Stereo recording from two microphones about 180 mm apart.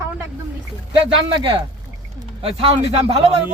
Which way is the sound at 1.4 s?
25° right (ahead or behind).